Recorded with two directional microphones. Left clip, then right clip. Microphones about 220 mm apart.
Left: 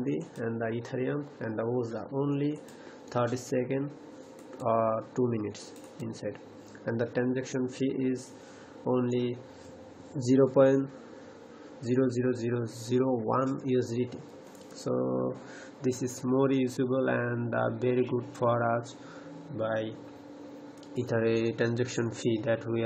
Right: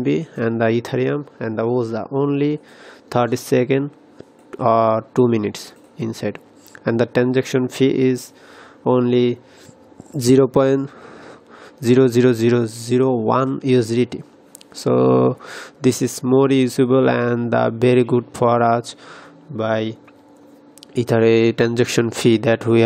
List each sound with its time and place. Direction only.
0.0 s speech: 50° right (ahead or behind)
11.8 s speech: 50° right (ahead or behind)
20.9 s speech: 45° right (ahead or behind)